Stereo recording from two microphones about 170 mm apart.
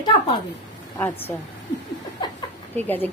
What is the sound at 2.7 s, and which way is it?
Speech, 10° left (ahead or behind).